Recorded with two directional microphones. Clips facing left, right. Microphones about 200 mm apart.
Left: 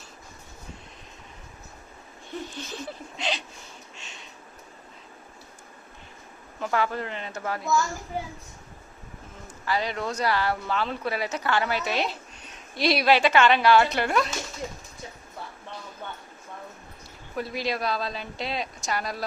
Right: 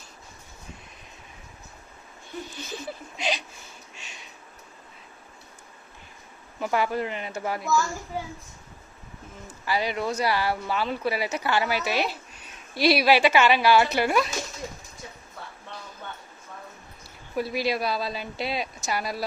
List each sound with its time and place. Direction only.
2.5 s a sound: 5° right (ahead or behind)
6.6 s speech: 10° right (ahead or behind)
9.6 s speech: 10° right (ahead or behind)
17.3 s speech: 10° right (ahead or behind)